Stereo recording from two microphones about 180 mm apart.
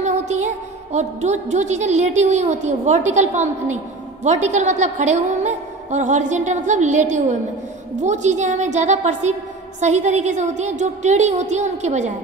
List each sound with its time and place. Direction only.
0.0 s music: 40° right (ahead or behind)
0.9 s a woman's voice: 40° right (ahead or behind)